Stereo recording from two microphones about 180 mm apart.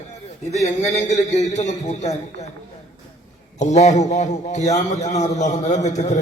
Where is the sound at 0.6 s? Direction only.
40° left (ahead or behind).